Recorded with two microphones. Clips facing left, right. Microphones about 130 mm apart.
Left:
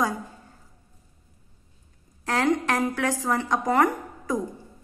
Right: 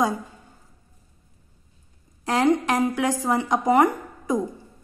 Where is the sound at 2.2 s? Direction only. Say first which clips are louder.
Right 3 dB; 15° right (ahead or behind).